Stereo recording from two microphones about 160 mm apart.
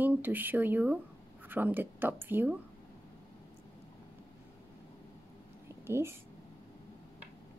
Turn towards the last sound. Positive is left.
turn(degrees=-15)  # may be behind; listen again after turning